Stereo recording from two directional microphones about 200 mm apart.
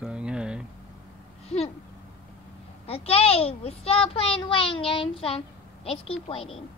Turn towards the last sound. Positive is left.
turn(degrees=30)  # may be behind; listen again after turning